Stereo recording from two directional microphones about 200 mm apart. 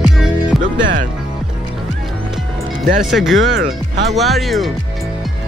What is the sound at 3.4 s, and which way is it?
Speech, 60° right (ahead or behind).